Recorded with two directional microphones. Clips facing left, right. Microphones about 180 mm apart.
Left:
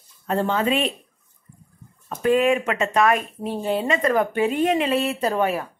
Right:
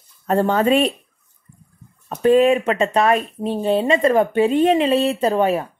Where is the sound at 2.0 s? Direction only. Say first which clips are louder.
Right 5 dB; 30° right (ahead or behind).